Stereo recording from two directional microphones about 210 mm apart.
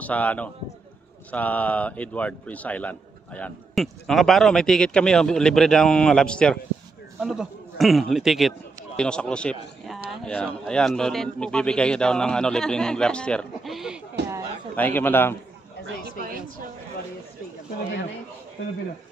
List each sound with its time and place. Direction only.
0.0 s a man's voice: 5° left (ahead or behind)
14.8 s a man's voice: 10° left (ahead or behind)
16.2 s a woman's voice: 45° right (ahead or behind)